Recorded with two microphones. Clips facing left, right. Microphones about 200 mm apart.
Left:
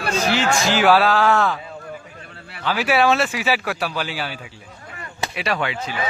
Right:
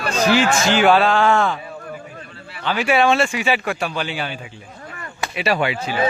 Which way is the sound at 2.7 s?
5° left (ahead or behind).